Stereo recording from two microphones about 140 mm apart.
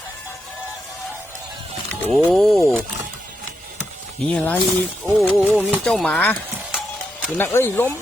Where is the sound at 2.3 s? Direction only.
Centre (ahead or behind).